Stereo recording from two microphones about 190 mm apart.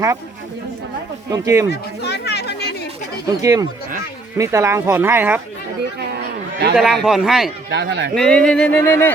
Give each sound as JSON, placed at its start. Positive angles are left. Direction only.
{"t": 1.3, "sound": "speech", "side_deg": -15}
{"t": 1.7, "sound": "chatter", "side_deg": 60}
{"t": 3.4, "sound": "speech", "side_deg": -20}
{"t": 6.0, "sound": "a sound", "side_deg": -55}
{"t": 6.7, "sound": "speech", "side_deg": -5}
{"t": 7.7, "sound": "a man's voice", "side_deg": -65}
{"t": 8.1, "sound": "speech", "side_deg": 5}